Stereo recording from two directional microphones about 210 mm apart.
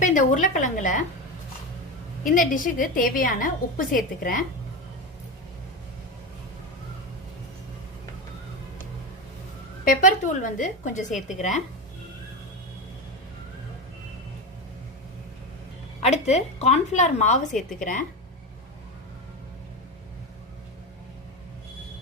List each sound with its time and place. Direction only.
0.0 s a woman's voice: 40° left (ahead or behind)
2.3 s a woman's voice: 40° left (ahead or behind)
9.8 s a woman's voice: 40° left (ahead or behind)
16.0 s a woman's voice: 30° left (ahead or behind)